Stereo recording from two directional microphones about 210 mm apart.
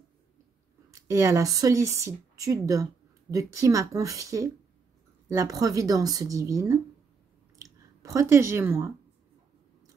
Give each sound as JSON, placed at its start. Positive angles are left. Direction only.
{"t": 0.9, "sound": "speech", "side_deg": -15}
{"t": 8.0, "sound": "speech", "side_deg": -15}